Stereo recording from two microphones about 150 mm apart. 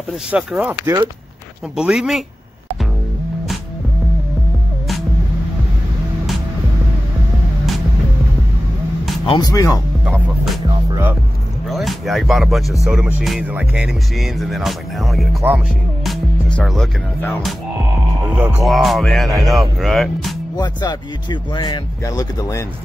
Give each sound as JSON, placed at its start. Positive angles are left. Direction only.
{"t": 0.3, "sound": "speech", "side_deg": -5}
{"t": 1.8, "sound": "music", "side_deg": -5}
{"t": 9.2, "sound": "speech", "side_deg": 30}
{"t": 11.7, "sound": "music", "side_deg": 0}
{"t": 18.3, "sound": "speech", "side_deg": -10}
{"t": 18.6, "sound": "music", "side_deg": 0}
{"t": 20.5, "sound": "speech", "side_deg": 30}